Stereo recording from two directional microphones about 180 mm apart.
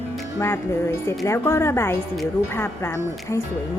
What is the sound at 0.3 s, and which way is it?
Speech, 15° left (ahead or behind).